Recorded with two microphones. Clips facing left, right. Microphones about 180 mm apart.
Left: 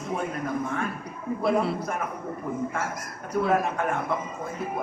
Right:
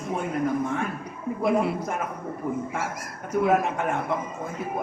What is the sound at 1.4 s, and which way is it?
Speech, 15° right (ahead or behind).